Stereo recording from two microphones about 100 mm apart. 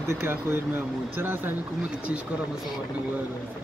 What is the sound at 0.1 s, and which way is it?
Speech, 25° right (ahead or behind).